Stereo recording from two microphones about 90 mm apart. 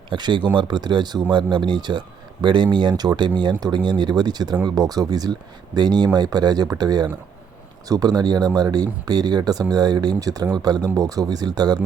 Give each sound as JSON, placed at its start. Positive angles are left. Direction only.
{"t": 0.1, "sound": "speech", "side_deg": -60}